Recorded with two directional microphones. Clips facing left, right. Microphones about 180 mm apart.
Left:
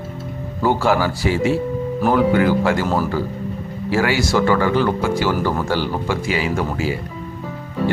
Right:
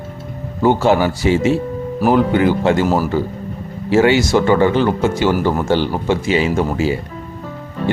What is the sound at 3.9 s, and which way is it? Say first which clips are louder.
Speech: right 6 dB; 25° right (ahead or behind).